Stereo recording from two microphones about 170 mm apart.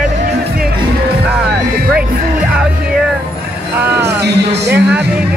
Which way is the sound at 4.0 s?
80° right.